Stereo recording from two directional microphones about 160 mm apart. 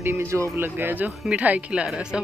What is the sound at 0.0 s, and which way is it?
Speech, 15° right (ahead or behind).